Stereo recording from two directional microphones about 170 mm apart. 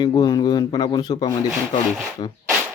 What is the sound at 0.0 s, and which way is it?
Speech, 25° left (ahead or behind).